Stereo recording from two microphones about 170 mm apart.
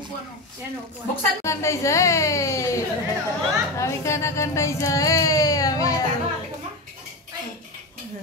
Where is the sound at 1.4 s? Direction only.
15° left (ahead or behind).